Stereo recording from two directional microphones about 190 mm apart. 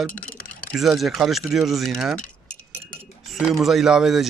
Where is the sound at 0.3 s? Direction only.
5° left (ahead or behind).